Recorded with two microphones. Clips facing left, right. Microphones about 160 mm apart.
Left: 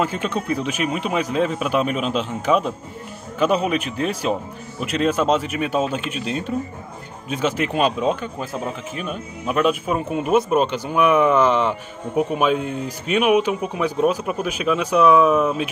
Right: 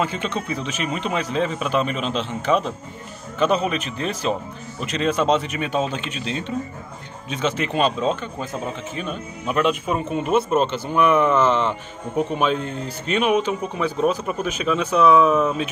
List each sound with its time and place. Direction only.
0.0 s speech: 5° left (ahead or behind)